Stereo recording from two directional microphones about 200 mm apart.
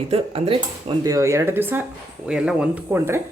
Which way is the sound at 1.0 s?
15° right (ahead or behind).